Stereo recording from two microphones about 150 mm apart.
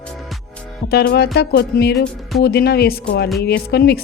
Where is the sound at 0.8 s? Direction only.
90° left.